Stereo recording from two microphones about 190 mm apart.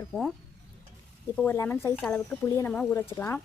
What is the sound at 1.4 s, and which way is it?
Speech, 10° left (ahead or behind).